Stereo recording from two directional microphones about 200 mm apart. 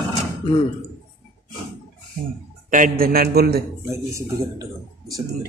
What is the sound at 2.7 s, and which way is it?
Speech, 45° right (ahead or behind).